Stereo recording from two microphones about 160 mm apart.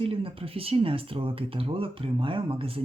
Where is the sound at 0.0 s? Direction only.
35° right (ahead or behind).